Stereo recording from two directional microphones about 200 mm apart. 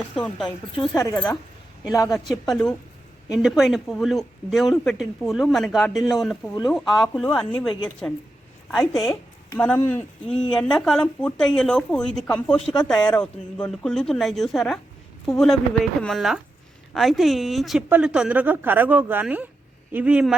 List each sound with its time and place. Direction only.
0.4 s a woman's voice: 20° left (ahead or behind)
2.1 s speech: centre (ahead or behind)
6.0 s speech: 20° left (ahead or behind)
6.7 s speech: centre (ahead or behind)
9.0 s a sound: 20° left (ahead or behind)
9.6 s speech: 10° left (ahead or behind)
12.6 s speech: 20° left (ahead or behind)
13.1 s a woman's voice: 5° left (ahead or behind)